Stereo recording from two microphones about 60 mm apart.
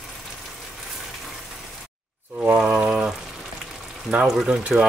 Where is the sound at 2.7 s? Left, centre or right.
Centre.